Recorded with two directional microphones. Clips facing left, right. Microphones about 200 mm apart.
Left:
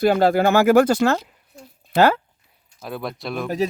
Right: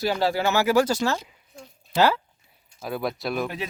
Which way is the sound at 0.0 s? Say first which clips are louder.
Left 7 dB; 55° left (ahead or behind).